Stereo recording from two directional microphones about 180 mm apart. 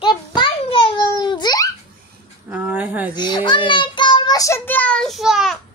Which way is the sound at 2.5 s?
10° right (ahead or behind).